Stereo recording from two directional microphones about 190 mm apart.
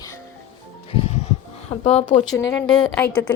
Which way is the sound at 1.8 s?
30° left (ahead or behind).